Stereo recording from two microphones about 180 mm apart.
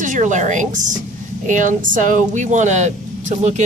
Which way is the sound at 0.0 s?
45° right (ahead or behind).